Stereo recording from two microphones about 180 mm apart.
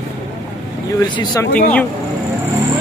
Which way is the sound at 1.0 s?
20° left (ahead or behind).